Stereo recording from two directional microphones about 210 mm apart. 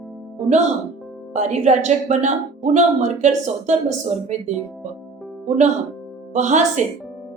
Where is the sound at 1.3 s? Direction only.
35° right (ahead or behind).